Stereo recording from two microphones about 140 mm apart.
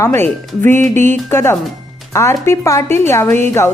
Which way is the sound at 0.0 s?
15° left (ahead or behind).